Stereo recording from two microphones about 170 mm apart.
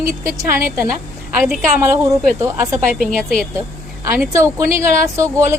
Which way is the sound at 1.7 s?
15° right (ahead or behind).